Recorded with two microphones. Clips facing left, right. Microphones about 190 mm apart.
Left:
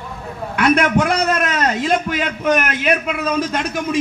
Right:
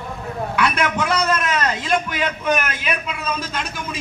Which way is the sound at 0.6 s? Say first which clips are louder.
Left 7 dB; 50° left (ahead or behind).